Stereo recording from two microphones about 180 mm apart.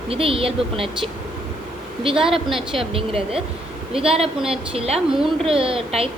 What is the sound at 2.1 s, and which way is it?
Speech, centre (ahead or behind).